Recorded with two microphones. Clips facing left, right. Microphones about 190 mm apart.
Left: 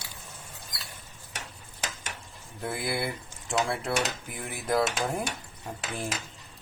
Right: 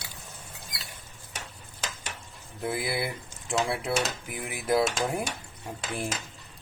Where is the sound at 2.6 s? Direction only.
Centre (ahead or behind).